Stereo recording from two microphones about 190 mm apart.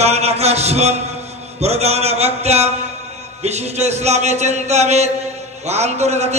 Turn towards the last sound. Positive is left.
turn(degrees=-35)  # may be behind; listen again after turning